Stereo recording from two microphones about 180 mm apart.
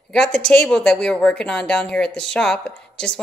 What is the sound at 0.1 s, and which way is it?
Speech, 5° left (ahead or behind).